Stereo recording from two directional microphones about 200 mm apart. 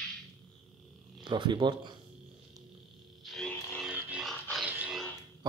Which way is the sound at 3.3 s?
5° left (ahead or behind).